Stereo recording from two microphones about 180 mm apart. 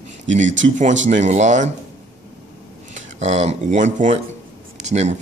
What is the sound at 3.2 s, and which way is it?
Speech, 40° right (ahead or behind).